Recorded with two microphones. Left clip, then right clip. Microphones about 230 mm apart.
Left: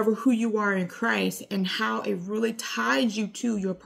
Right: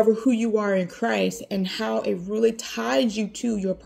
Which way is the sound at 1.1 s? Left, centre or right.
Left.